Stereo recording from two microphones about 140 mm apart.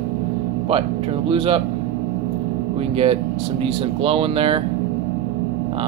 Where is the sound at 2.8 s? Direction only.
45° right (ahead or behind).